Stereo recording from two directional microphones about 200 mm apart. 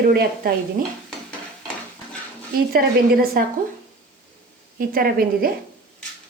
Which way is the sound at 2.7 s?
50° right (ahead or behind).